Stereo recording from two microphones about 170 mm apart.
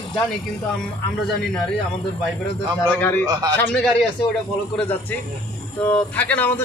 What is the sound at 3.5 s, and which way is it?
Speech, 5° left (ahead or behind).